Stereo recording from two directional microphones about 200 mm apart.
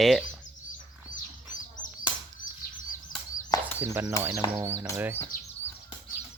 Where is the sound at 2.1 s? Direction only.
5° right (ahead or behind).